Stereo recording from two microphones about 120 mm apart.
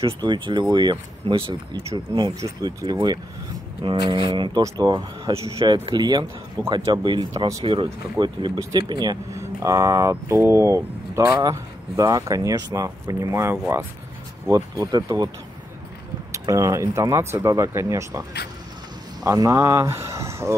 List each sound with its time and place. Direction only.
0.0 s speech: 40° right (ahead or behind)
5.7 s speech: 35° right (ahead or behind)
7.6 s speech: 45° right (ahead or behind)
16.3 s speech: 30° right (ahead or behind)
19.2 s speech: 25° right (ahead or behind)